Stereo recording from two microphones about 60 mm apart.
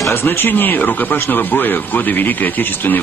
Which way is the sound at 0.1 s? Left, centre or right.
Left.